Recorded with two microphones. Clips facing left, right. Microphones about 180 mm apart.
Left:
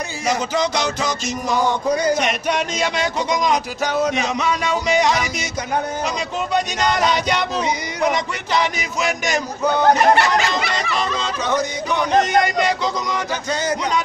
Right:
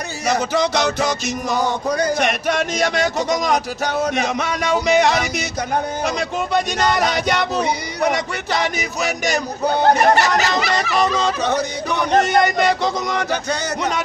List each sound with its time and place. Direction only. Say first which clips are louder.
0.4 s speech: right 4 dB; 60° right (ahead or behind)
8.5 s speech: left 1 dB; 45° right (ahead or behind); by 14.0 s 60° right (ahead or behind)